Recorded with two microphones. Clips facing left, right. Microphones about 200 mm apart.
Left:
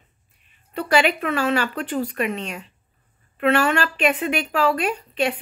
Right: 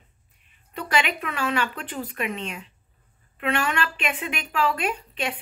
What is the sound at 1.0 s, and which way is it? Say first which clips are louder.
Speech: left 7 dB; 40° left (ahead or behind).